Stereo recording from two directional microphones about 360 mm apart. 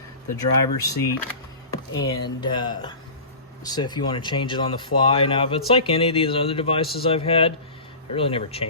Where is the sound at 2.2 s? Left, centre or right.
Centre.